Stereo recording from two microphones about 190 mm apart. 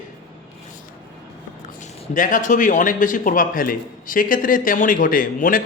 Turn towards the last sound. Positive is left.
turn(degrees=45)  # may be behind; listen again after turning